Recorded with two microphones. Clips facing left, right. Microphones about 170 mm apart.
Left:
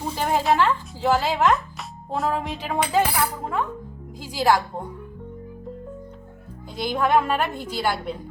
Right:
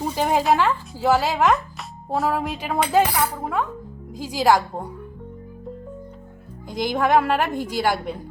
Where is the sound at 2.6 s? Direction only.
10° right (ahead or behind).